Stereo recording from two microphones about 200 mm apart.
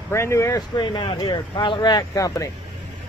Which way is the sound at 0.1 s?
15° left (ahead or behind).